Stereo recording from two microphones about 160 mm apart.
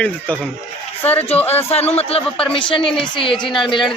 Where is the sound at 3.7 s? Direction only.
30° left (ahead or behind).